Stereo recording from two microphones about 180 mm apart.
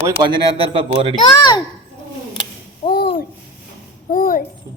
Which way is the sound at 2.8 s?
40° left (ahead or behind).